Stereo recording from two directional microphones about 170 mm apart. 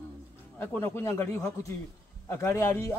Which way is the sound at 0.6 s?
15° left (ahead or behind).